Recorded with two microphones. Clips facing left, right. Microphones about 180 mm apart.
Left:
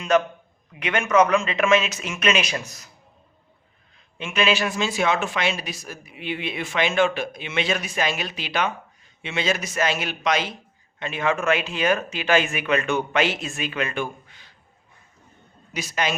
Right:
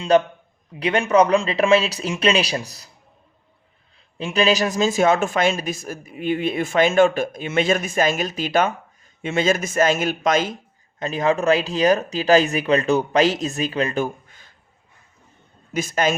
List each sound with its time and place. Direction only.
0.1 s speech: 35° right (ahead or behind)
3.9 s speech: 35° right (ahead or behind)
15.7 s speech: 50° right (ahead or behind)